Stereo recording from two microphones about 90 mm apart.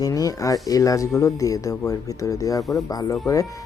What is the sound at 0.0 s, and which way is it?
Speech, 40° left (ahead or behind).